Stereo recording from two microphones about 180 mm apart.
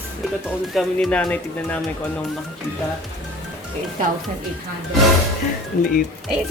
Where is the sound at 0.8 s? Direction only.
5° left (ahead or behind).